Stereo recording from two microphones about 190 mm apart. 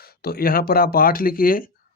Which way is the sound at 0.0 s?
55° left (ahead or behind).